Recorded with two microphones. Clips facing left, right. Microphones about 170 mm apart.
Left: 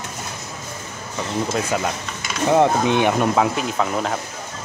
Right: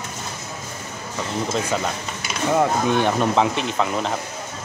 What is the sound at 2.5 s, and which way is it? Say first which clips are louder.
Speech: left 3 dB; 20° left (ahead or behind).